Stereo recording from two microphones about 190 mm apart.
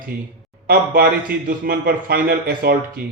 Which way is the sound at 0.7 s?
50° right (ahead or behind).